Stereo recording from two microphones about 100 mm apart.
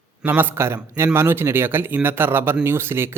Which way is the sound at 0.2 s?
20° right (ahead or behind).